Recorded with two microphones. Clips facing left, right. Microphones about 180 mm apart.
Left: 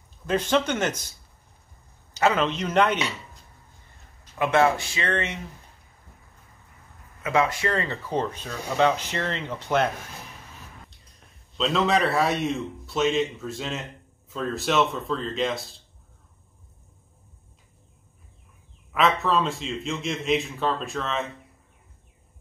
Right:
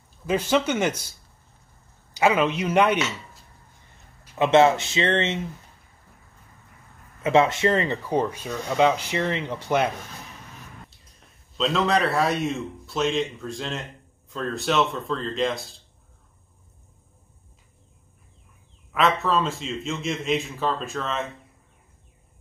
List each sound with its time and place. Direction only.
0.3 s speech: 5° right (ahead or behind)
2.1 s speech: 10° right (ahead or behind)
4.4 s speech: 25° right (ahead or behind)
7.2 s speech: 25° right (ahead or behind); by 9.8 s 10° right (ahead or behind)
11.1 s a man's voice: centre (ahead or behind)
18.9 s a man's voice: centre (ahead or behind)